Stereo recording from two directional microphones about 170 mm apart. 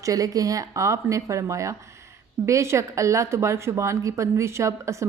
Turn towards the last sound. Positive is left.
turn(degrees=-15)  # may be behind; listen again after turning